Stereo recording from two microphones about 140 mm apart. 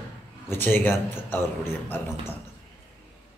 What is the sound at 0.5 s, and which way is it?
Speech, 15° left (ahead or behind).